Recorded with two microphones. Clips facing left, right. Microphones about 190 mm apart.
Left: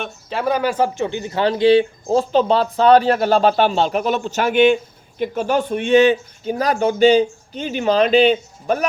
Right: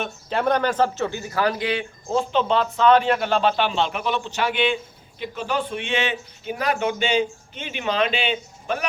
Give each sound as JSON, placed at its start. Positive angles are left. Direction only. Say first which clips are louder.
{"t": 0.0, "sound": "a man's voice", "louder": "left 1 dB", "side_deg": 0}